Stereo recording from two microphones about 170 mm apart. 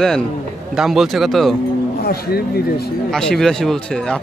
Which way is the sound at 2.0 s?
65° left (ahead or behind).